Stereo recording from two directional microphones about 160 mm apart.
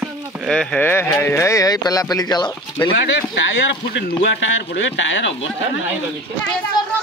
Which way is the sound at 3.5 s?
90° left.